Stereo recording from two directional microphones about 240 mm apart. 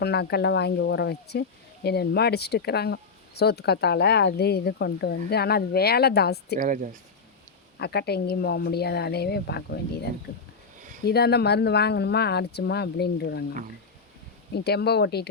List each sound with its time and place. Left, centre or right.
0.0 s speech: left
6.6 s speech: right
7.8 s speech: left
14.5 s speech: left